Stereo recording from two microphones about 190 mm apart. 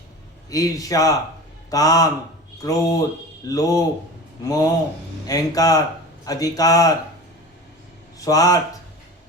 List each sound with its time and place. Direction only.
0.5 s a man's voice: 20° left (ahead or behind)
8.2 s a man's voice: 20° left (ahead or behind)